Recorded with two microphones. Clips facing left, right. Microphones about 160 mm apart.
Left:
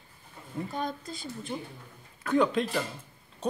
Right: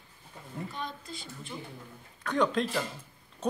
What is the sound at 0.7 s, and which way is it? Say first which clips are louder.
Speech: left 5 dB; 45° left (ahead or behind).